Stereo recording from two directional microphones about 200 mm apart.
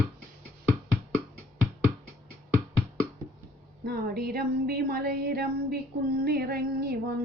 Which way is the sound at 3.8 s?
50° right (ahead or behind).